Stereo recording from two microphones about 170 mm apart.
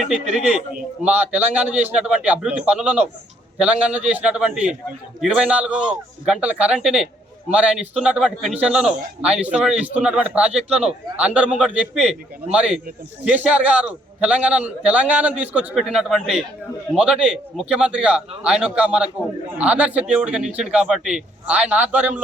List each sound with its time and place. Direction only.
0.3 s speech: 50° right (ahead or behind)
1.0 s a man's voice: 10° right (ahead or behind)